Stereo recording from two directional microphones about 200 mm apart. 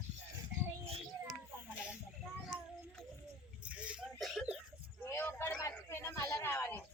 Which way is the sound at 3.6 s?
5° right (ahead or behind).